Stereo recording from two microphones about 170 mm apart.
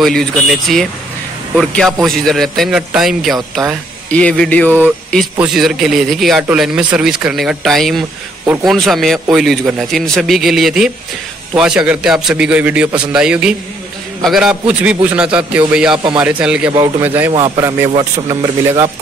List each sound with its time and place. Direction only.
0.0 s a man's voice: centre (ahead or behind)
5.4 s a man's voice: centre (ahead or behind); by 18.9 s 20° right (ahead or behind)